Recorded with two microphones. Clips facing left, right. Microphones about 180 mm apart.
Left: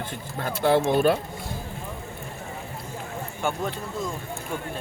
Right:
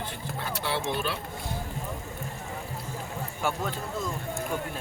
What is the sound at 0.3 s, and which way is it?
Speech, 50° left (ahead or behind).